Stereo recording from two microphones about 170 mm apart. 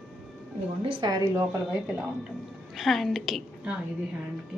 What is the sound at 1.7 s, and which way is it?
A woman's voice, 10° right (ahead or behind).